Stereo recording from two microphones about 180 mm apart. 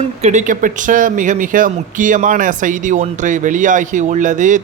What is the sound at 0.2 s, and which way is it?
Speech, 40° right (ahead or behind).